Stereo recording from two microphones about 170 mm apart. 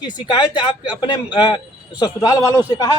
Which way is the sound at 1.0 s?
25° left (ahead or behind).